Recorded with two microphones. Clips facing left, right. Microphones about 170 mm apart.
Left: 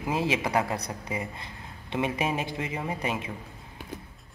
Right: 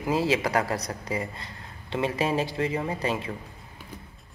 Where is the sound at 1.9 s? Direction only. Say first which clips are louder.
Right 2 dB; 15° left (ahead or behind).